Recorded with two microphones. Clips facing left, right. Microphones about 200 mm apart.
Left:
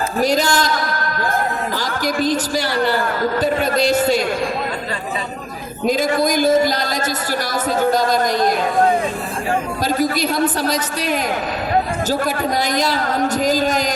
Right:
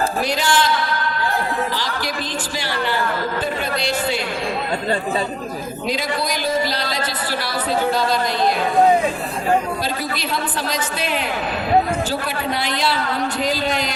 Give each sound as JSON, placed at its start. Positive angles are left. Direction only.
{"t": 0.2, "sound": "speech", "side_deg": 40}
{"t": 5.8, "sound": "speech", "side_deg": 45}
{"t": 10.0, "sound": "speech", "side_deg": 45}
{"t": 12.2, "sound": "speech", "side_deg": 45}